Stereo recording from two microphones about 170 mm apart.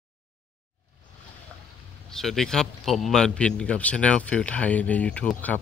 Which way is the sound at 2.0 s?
Centre (ahead or behind).